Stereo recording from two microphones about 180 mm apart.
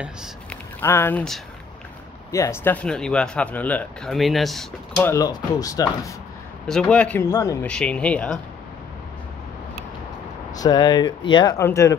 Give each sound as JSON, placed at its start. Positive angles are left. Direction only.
{"t": 0.5, "sound": "a sound", "side_deg": 10}
{"t": 2.3, "sound": "speech", "side_deg": 15}
{"t": 5.0, "sound": "speech", "side_deg": 20}
{"t": 6.7, "sound": "speech", "side_deg": 5}
{"t": 10.6, "sound": "speech", "side_deg": 20}